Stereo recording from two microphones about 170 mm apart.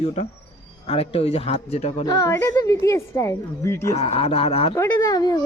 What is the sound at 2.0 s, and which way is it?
A woman's voice, 20° left (ahead or behind).